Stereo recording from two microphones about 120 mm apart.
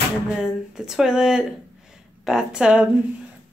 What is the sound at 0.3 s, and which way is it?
Speech, 5° right (ahead or behind).